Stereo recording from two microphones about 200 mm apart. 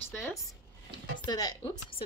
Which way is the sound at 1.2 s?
20° left (ahead or behind).